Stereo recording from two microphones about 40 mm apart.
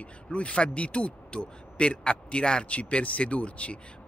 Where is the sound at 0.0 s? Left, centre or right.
Left.